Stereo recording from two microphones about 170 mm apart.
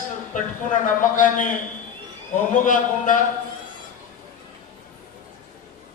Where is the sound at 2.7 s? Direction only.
50° left (ahead or behind).